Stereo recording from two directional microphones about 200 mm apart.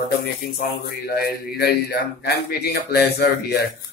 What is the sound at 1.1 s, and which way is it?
Speech, 50° left (ahead or behind).